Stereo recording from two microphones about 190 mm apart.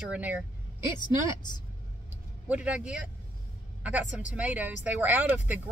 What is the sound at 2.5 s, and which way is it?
Speech, 5° right (ahead or behind).